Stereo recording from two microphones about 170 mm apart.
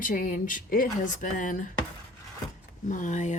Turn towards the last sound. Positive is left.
turn(degrees=45)  # may be behind; listen again after turning